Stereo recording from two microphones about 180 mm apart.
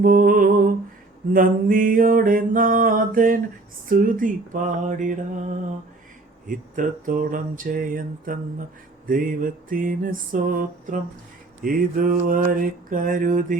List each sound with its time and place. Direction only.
0.0 s lullaby: 50° right (ahead or behind)
1.3 s mantra: 50° right (ahead or behind)
6.5 s mantra: 50° right (ahead or behind)